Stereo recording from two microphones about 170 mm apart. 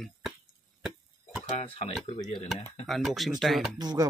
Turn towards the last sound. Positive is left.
turn(degrees=-25)  # may be behind; listen again after turning